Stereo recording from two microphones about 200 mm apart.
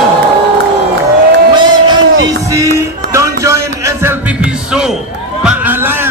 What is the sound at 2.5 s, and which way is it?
Music, 15° right (ahead or behind).